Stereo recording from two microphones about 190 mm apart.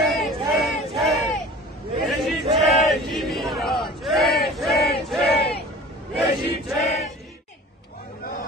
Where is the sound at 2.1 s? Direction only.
Centre (ahead or behind).